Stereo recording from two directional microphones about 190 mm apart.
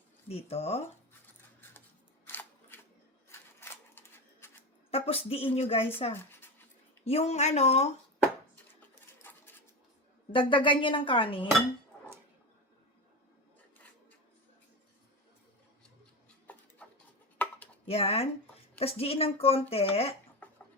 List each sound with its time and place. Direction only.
0.3 s speech: 30° left (ahead or behind)
2.2 s a sound: 10° left (ahead or behind)
4.9 s speech: 30° left (ahead or behind)
9.1 s sewing machine: 10° left (ahead or behind)
10.3 s a woman's voice: 25° left (ahead or behind)
17.3 s dishes: 10° left (ahead or behind)
17.8 s speech: 30° left (ahead or behind)
20.4 s a sound: 10° left (ahead or behind)